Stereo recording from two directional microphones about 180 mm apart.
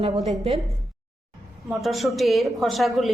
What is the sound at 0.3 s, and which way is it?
Speech, 35° right (ahead or behind).